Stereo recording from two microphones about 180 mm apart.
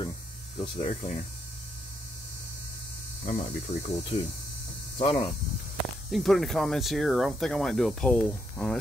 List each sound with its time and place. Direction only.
0.7 s speech: 45° left (ahead or behind)
3.3 s speech: 35° left (ahead or behind)
6.1 s speech: centre (ahead or behind)